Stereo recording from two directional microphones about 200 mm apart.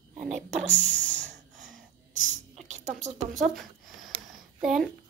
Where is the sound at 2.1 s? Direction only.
40° right (ahead or behind).